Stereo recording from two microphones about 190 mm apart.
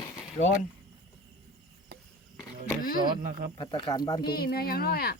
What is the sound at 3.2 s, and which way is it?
Speech, 45° right (ahead or behind).